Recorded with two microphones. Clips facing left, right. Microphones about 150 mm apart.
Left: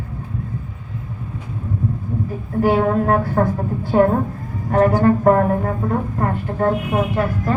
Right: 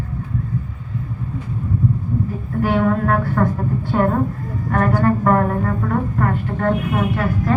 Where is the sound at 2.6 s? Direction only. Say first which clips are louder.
Left 2 dB; 35° left (ahead or behind).